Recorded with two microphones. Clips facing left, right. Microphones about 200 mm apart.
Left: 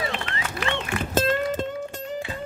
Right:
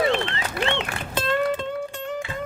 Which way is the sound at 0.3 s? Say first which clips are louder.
Right 3 dB; 25° right (ahead or behind).